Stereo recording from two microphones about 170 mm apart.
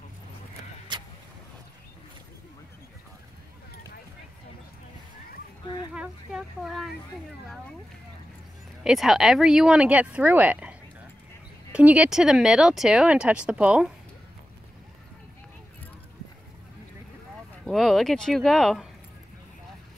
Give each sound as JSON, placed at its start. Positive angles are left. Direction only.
{"t": 0.9, "sound": "vehicle", "side_deg": -25}
{"t": 5.9, "sound": "a sound", "side_deg": 0}
{"t": 8.8, "sound": "speech", "side_deg": -5}
{"t": 17.6, "sound": "speech", "side_deg": 0}